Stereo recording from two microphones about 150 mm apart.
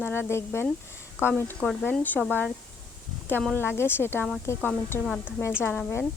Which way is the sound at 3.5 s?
15° left (ahead or behind).